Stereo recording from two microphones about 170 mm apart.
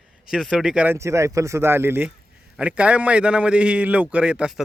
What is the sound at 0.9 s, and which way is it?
A man's voice, 15° right (ahead or behind).